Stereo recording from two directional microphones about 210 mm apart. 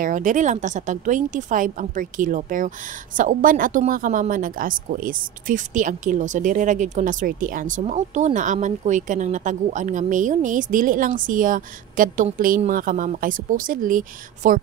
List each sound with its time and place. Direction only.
0.0 s speech: 40° right (ahead or behind)